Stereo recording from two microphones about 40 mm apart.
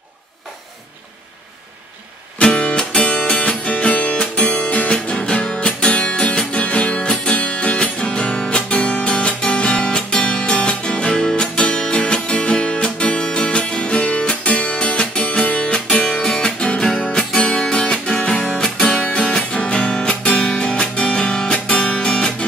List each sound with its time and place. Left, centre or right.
2.4 s music: left
18.9 s music: left